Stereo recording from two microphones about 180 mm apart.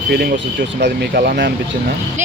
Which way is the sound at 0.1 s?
60° right (ahead or behind).